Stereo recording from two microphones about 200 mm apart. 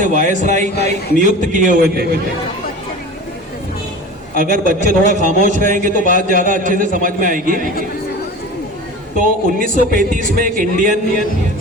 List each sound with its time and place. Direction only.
0.0 s a man's voice: 40° right (ahead or behind)
4.4 s a man's voice: 45° right (ahead or behind)
9.1 s speech: 45° right (ahead or behind)